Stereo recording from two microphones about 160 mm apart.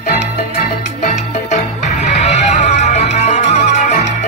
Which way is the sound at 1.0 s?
45° left (ahead or behind).